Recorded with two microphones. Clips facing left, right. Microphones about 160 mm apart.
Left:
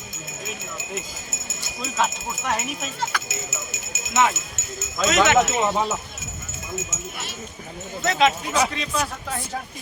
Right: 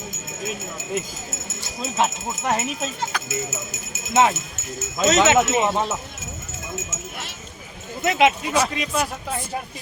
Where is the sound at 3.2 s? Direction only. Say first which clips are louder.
Right 5 dB; 50° right (ahead or behind).